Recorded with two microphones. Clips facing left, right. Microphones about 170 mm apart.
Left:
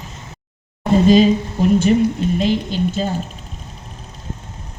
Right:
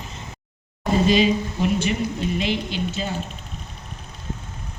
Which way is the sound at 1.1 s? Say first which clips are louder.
Left 7 dB; 40° left (ahead or behind).